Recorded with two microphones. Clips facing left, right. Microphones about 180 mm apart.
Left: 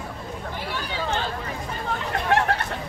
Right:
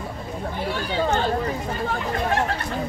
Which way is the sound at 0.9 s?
40° right (ahead or behind).